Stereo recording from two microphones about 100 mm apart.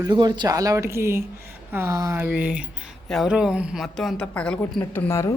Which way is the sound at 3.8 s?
5° left (ahead or behind).